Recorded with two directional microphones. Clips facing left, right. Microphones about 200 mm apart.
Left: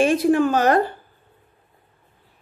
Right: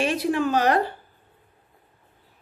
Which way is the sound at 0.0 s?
50° left (ahead or behind).